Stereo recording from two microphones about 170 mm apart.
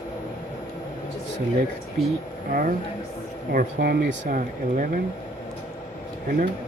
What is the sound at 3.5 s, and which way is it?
Speech, 65° right (ahead or behind).